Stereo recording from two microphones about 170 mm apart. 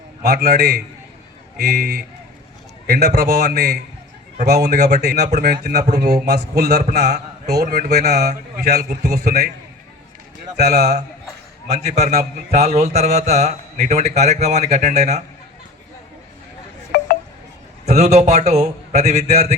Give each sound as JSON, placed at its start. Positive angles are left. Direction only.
{"t": 0.2, "sound": "a man's voice", "side_deg": -70}
{"t": 6.2, "sound": "a man's voice", "side_deg": -75}
{"t": 10.6, "sound": "a man's voice", "side_deg": -70}
{"t": 11.7, "sound": "speech", "side_deg": -40}
{"t": 16.9, "sound": "wind chime", "side_deg": 60}
{"t": 17.8, "sound": "speech", "side_deg": -40}